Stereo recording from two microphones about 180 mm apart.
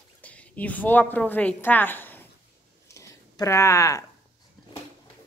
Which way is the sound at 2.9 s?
15° left (ahead or behind).